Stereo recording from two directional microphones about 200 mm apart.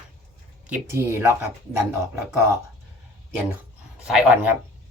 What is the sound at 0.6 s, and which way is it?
Speech, 10° right (ahead or behind).